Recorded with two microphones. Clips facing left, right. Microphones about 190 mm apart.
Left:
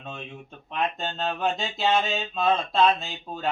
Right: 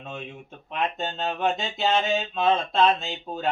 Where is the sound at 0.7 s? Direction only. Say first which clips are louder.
Even; centre (ahead or behind).